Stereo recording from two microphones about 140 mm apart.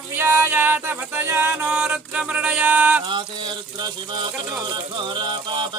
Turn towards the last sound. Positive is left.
turn(degrees=-35)  # may be behind; listen again after turning